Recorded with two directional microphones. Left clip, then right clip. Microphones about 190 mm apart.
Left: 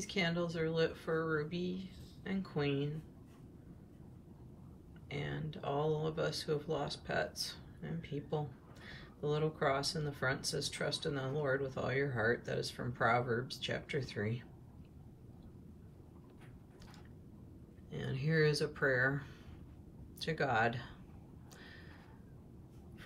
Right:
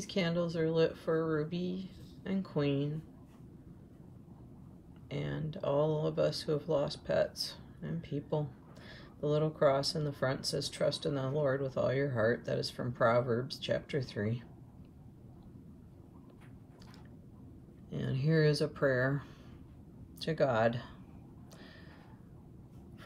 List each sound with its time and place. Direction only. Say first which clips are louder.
0.0 s speech: right 2 dB; 15° right (ahead or behind)
5.1 s speech: right 3 dB; 15° right (ahead or behind)
17.8 s speech: right 4 dB; 20° right (ahead or behind)